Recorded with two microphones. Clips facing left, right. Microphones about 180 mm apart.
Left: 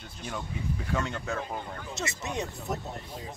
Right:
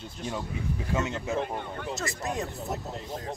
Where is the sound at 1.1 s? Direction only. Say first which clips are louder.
Right 3 dB; 20° right (ahead or behind).